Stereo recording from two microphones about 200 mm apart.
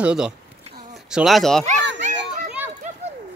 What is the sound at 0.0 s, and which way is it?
Speech, 5° right (ahead or behind).